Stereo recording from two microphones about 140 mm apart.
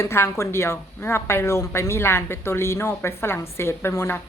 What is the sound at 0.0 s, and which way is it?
Speech, 20° left (ahead or behind).